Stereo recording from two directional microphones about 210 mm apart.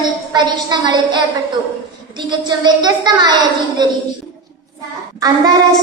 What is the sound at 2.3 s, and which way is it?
A woman's voice, 20° right (ahead or behind).